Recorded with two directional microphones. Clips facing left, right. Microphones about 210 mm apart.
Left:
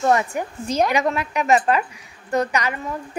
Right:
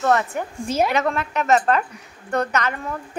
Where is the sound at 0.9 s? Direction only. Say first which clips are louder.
Left 1 dB; 10° left (ahead or behind).